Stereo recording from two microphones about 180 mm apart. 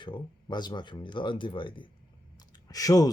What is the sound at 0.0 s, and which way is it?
Speech, 25° left (ahead or behind).